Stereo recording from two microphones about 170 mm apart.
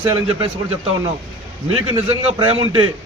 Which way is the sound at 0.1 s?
30° right (ahead or behind).